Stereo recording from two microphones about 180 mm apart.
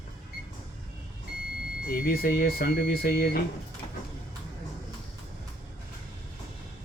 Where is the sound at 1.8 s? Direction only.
55° left (ahead or behind).